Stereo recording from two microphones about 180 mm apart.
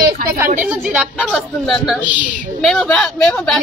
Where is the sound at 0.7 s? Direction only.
5° right (ahead or behind).